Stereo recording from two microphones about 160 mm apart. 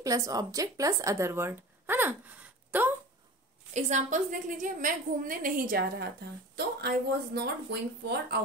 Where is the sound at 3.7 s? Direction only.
45° right (ahead or behind); by 6.1 s 65° right (ahead or behind).